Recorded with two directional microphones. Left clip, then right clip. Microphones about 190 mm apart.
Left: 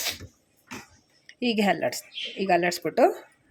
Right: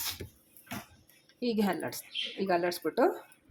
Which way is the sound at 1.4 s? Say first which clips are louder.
Left 8 dB; 40° left (ahead or behind).